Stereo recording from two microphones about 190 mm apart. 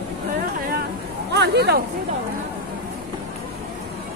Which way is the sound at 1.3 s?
60° right (ahead or behind).